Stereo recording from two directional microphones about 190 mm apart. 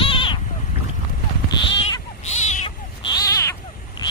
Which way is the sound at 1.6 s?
35° left (ahead or behind).